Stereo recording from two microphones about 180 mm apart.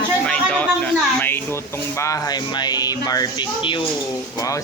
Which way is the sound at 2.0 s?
15° left (ahead or behind).